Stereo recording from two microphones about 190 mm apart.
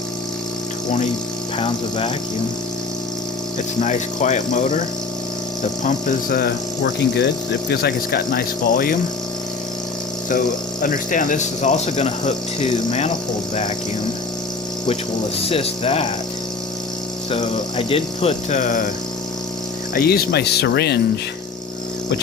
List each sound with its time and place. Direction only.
1.5 s speech: 30° left (ahead or behind)
3.8 s speech: 40° left (ahead or behind)
10.2 s speech: 45° left (ahead or behind)
15.4 s speech: 30° left (ahead or behind)
17.3 s speech: 30° left (ahead or behind)
19.9 s speech: 55° left (ahead or behind)